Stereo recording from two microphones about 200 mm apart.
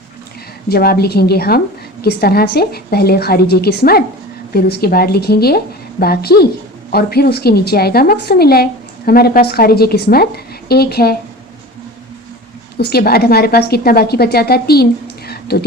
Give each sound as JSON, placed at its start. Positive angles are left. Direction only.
{"t": 0.7, "sound": "a woman's voice", "side_deg": 50}
{"t": 12.7, "sound": "a woman's voice", "side_deg": 50}
{"t": 15.3, "sound": "a sound", "side_deg": 50}